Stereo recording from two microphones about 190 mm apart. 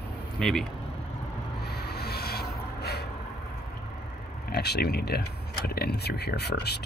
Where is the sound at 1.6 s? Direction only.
60° left (ahead or behind).